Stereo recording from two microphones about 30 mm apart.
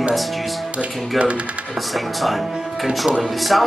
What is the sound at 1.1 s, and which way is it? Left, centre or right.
Speech, right.